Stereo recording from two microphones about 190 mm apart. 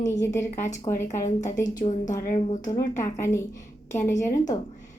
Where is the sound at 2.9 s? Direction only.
15° left (ahead or behind).